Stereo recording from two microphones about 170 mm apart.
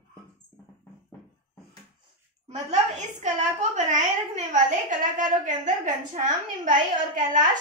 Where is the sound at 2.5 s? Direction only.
45° right (ahead or behind).